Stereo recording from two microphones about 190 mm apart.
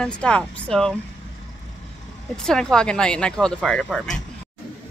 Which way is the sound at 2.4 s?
5° left (ahead or behind).